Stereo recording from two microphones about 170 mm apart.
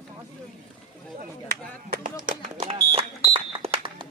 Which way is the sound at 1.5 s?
60° right (ahead or behind).